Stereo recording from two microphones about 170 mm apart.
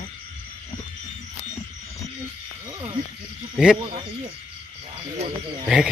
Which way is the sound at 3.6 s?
5° right (ahead or behind).